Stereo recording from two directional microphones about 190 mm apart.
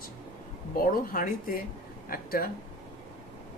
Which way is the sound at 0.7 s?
50° left (ahead or behind).